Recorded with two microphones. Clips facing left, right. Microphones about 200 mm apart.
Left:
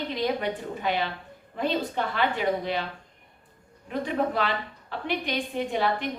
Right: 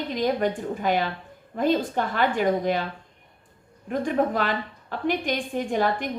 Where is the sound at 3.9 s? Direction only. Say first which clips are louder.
Right 3 dB; 45° right (ahead or behind).